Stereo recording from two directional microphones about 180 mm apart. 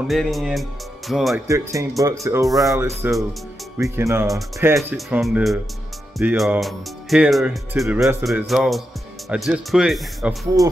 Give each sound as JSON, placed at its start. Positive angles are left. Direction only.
{"t": 0.0, "sound": "speech", "side_deg": 0}
{"t": 1.5, "sound": "speech", "side_deg": -15}
{"t": 2.4, "sound": "speech", "side_deg": 0}
{"t": 4.7, "sound": "speech", "side_deg": 0}